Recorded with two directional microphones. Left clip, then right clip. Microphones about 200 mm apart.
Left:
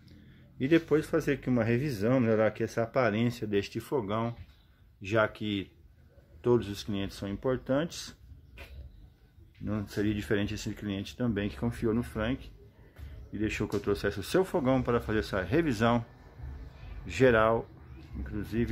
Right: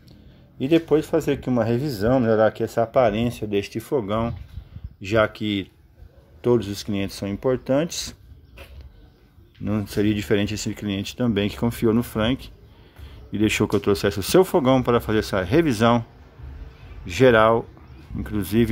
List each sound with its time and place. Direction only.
0.6 s speech: 5° right (ahead or behind); by 8.2 s 35° right (ahead or behind)
9.7 s speech: 35° right (ahead or behind)
18.2 s speech: 50° right (ahead or behind)